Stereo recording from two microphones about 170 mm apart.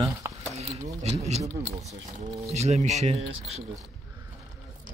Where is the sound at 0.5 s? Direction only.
40° right (ahead or behind).